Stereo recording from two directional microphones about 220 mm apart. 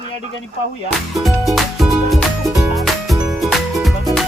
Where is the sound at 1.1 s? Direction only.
Centre (ahead or behind).